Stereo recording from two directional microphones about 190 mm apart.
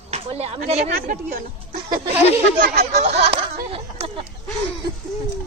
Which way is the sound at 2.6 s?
55° right (ahead or behind).